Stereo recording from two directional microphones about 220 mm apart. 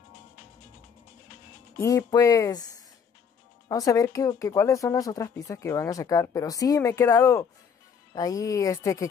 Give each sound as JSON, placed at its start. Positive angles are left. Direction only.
{"t": 1.8, "sound": "speech", "side_deg": 15}